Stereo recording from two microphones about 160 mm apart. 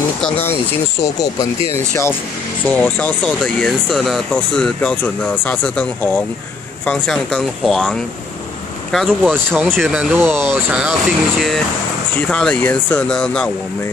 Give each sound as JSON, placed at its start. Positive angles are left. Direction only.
{"t": 0.2, "sound": "speech", "side_deg": 15}
{"t": 2.6, "sound": "speech", "side_deg": 10}
{"t": 10.1, "sound": "speech", "side_deg": -15}